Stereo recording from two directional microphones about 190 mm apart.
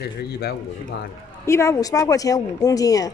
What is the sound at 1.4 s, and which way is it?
Speech, 15° left (ahead or behind).